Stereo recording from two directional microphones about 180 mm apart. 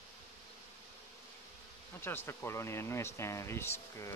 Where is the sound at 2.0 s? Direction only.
10° left (ahead or behind).